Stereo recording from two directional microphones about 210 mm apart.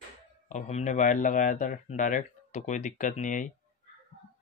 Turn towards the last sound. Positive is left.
turn(degrees=40)  # may be behind; listen again after turning